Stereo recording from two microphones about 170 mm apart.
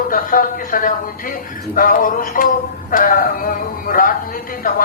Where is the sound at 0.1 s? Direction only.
55° left (ahead or behind).